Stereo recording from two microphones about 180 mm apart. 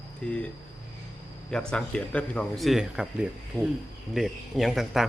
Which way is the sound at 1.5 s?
5° left (ahead or behind).